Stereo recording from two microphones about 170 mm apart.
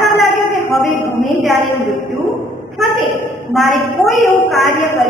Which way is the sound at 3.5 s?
Centre (ahead or behind).